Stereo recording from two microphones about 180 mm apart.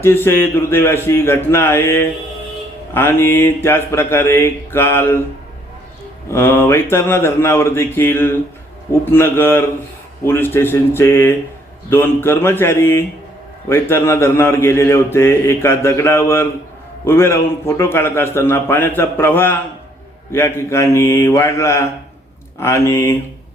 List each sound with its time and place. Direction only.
0.0 s speech: 15° left (ahead or behind)
6.3 s speech: 10° left (ahead or behind)